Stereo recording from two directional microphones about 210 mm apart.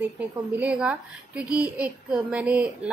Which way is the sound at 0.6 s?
5° right (ahead or behind).